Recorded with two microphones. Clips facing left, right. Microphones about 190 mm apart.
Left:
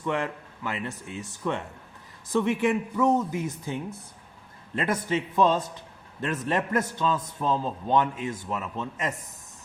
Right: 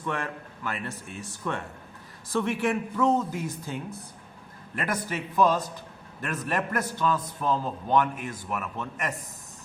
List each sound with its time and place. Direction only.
0.0 s a man's voice: 15° left (ahead or behind)